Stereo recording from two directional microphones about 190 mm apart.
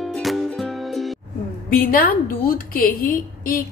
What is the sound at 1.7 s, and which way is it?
A woman's voice, 50° left (ahead or behind).